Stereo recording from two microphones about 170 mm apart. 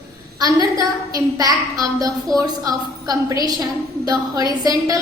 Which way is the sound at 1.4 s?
20° right (ahead or behind).